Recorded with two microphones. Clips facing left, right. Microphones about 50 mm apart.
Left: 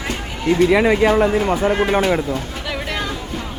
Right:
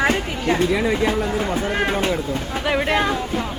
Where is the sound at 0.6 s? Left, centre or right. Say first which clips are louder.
Left 8 dB; left.